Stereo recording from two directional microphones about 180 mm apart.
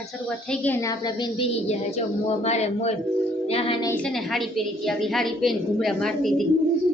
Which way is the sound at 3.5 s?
30° left (ahead or behind).